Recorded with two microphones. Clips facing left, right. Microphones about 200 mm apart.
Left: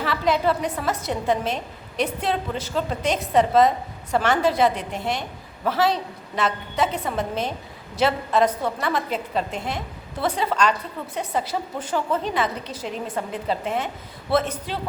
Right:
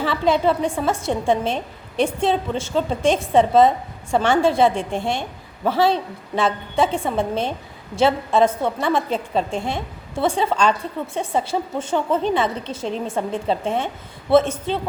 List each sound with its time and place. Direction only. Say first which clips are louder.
0.0 s a woman's voice: right 3 dB; 25° right (ahead or behind)